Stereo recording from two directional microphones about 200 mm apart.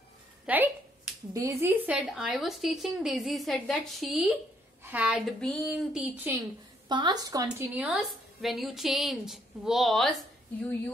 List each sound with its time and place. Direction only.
0.5 s a woman's voice: 5° right (ahead or behind)
6.1 s a woman's voice: 10° right (ahead or behind)
6.9 s speech: 20° right (ahead or behind)
7.7 s a woman's voice: 5° right (ahead or behind)